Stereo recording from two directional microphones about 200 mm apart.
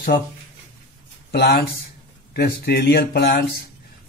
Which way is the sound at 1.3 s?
50° left (ahead or behind).